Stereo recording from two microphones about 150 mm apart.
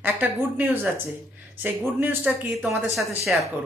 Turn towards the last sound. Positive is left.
turn(degrees=0)  # may be behind; listen again after turning